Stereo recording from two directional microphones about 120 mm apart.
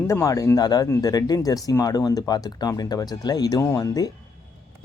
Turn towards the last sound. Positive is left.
turn(degrees=30)  # may be behind; listen again after turning